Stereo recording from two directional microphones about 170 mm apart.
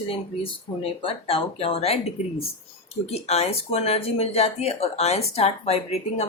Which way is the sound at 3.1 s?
40° left (ahead or behind).